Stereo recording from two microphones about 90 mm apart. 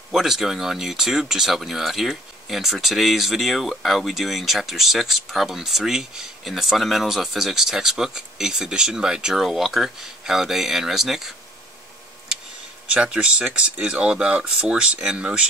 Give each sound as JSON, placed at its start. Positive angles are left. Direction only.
{"t": 0.1, "sound": "speech", "side_deg": -5}
{"t": 12.9, "sound": "speech", "side_deg": -10}